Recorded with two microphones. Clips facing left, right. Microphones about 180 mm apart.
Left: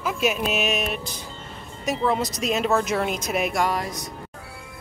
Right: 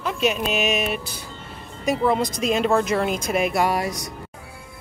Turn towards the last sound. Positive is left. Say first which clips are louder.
# right 3 dB
turn(degrees=-10)  # may be behind; listen again after turning